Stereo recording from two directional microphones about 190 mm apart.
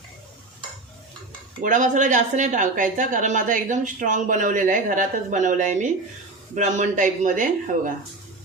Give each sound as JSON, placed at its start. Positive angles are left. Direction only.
{"t": 1.6, "sound": "a man's voice", "side_deg": -40}